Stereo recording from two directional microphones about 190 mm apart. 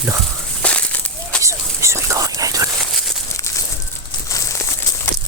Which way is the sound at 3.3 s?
15° left (ahead or behind).